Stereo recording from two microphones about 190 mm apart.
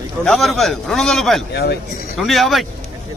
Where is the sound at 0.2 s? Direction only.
Centre (ahead or behind).